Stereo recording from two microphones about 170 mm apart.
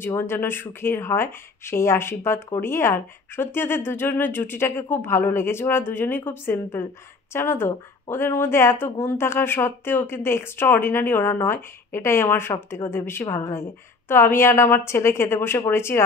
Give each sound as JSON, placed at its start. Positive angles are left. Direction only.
{"t": 0.0, "sound": "speech", "side_deg": 15}